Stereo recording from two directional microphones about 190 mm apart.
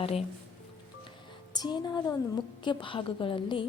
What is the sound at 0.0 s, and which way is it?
Speech, 30° left (ahead or behind).